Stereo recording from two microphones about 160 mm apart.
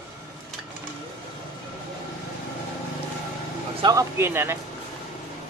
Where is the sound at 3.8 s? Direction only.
15° right (ahead or behind).